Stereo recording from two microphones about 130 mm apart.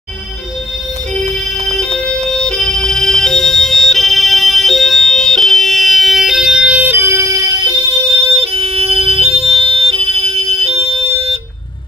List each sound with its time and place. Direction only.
2.0 s music: 5° left (ahead or behind); by 8.3 s 30° right (ahead or behind)
8.3 s siren: 50° right (ahead or behind)